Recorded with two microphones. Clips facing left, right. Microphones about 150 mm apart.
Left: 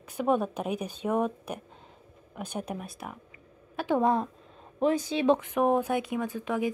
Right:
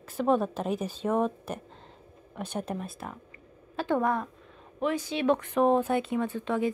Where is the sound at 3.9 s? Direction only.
25° left (ahead or behind).